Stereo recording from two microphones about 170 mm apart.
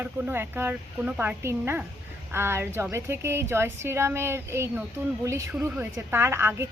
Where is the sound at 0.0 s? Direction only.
10° right (ahead or behind).